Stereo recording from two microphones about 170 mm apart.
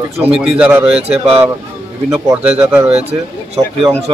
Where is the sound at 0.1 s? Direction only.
10° right (ahead or behind).